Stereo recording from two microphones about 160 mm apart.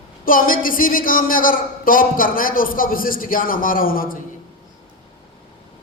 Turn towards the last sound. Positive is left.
turn(degrees=60)  # may be behind; listen again after turning